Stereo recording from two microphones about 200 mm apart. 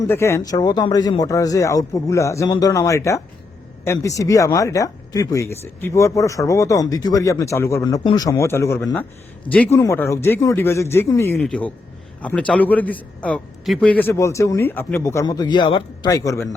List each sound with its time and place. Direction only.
0.0 s speech: 15° left (ahead or behind)